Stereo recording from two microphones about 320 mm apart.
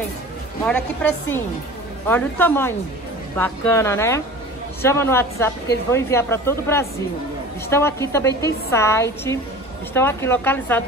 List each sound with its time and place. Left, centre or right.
0.7 s a woman's voice: centre